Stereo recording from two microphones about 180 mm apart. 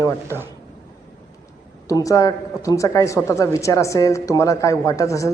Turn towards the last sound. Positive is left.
turn(degrees=15)  # may be behind; listen again after turning